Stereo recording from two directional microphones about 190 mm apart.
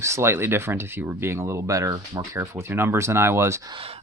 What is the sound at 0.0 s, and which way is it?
Speech, 15° right (ahead or behind).